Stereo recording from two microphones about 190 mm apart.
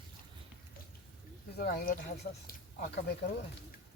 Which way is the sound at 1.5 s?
55° left (ahead or behind).